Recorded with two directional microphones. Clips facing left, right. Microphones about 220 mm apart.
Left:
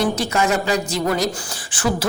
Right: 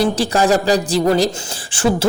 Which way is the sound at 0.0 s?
35° right (ahead or behind).